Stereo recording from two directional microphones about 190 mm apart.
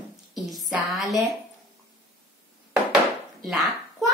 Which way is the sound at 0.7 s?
Centre (ahead or behind).